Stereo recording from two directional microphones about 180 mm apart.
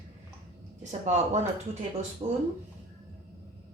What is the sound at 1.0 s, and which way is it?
A woman's voice, 40° right (ahead or behind).